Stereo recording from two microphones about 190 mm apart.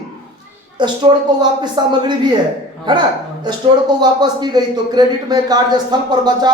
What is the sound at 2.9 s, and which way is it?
Speech, 25° right (ahead or behind).